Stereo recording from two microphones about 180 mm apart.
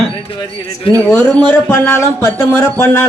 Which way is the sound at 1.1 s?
5° left (ahead or behind).